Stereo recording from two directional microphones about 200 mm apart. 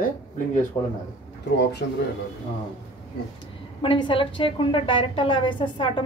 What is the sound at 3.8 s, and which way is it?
A woman's voice, 25° left (ahead or behind).